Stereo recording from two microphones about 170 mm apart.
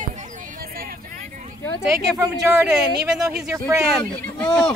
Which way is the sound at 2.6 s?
5° right (ahead or behind).